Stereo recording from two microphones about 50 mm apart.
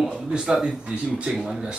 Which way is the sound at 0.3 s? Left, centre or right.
Centre.